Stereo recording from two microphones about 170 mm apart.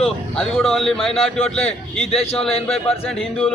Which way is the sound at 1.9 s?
35° left (ahead or behind).